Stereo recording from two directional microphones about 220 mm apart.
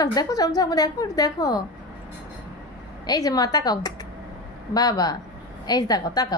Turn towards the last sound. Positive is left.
turn(degrees=15)  # may be behind; listen again after turning